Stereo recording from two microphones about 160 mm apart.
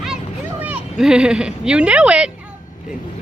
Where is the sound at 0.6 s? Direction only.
5° right (ahead or behind).